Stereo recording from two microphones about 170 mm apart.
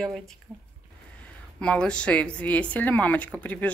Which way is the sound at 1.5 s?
5° left (ahead or behind).